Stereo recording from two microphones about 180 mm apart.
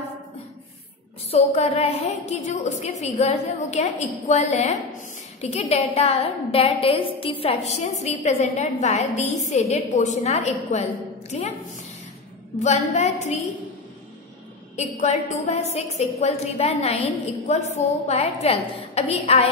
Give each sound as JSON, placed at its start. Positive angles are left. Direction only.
{"t": 1.3, "sound": "a woman's voice", "side_deg": 35}
{"t": 12.6, "sound": "a woman's voice", "side_deg": 40}
{"t": 14.8, "sound": "a woman's voice", "side_deg": 40}